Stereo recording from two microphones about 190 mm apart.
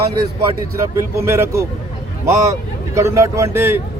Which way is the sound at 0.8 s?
15° right (ahead or behind).